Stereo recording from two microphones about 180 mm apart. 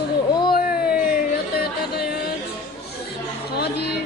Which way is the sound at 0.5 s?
55° left (ahead or behind).